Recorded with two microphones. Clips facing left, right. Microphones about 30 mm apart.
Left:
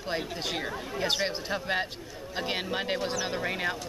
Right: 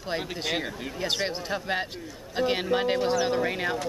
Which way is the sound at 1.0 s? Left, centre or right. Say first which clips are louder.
Even; centre.